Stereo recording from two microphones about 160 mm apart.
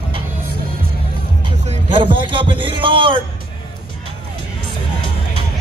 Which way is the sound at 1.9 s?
30° right (ahead or behind).